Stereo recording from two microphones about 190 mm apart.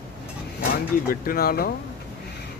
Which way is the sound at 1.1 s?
50° left (ahead or behind).